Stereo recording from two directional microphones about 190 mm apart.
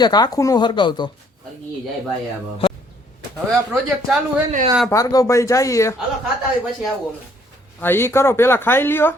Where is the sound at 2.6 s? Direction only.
30° left (ahead or behind).